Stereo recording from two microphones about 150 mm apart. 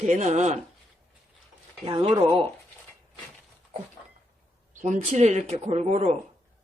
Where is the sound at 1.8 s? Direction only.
35° right (ahead or behind).